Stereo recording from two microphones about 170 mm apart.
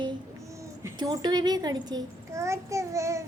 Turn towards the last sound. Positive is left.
turn(degrees=-15)  # may be behind; listen again after turning